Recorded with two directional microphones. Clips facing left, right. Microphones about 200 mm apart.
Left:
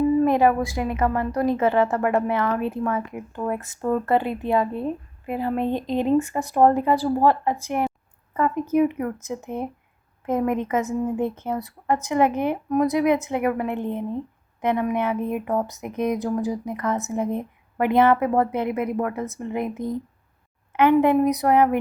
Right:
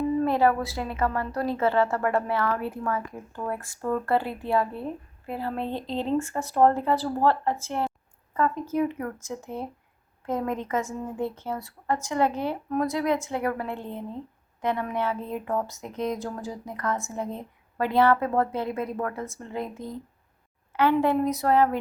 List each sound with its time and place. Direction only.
0.2 s a woman's voice: 15° left (ahead or behind)